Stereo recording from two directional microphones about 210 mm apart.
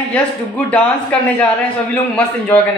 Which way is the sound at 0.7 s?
5° left (ahead or behind).